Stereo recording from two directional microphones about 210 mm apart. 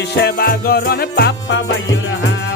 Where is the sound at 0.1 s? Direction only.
50° left (ahead or behind).